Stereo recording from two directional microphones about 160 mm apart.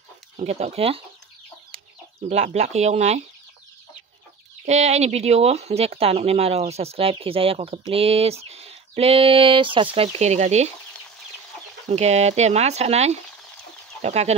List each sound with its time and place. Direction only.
0.4 s speech: 45° right (ahead or behind)
2.2 s speech: 40° right (ahead or behind)
4.6 s speech: 45° right (ahead or behind)
11.9 s speech: 45° right (ahead or behind)